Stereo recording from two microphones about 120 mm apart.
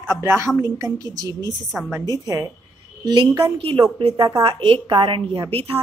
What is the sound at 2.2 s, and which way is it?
A woman's voice, 30° right (ahead or behind).